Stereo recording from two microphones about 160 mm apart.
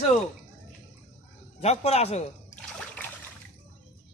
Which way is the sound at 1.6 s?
40° left (ahead or behind).